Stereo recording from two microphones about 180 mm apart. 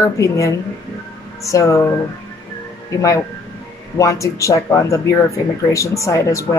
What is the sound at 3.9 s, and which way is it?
Speech, 15° left (ahead or behind).